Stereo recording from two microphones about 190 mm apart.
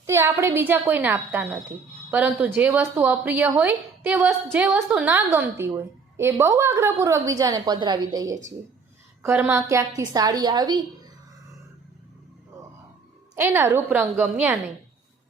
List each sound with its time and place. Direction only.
0.0 s a woman's voice: 15° right (ahead or behind)
13.3 s a woman's voice: 15° right (ahead or behind)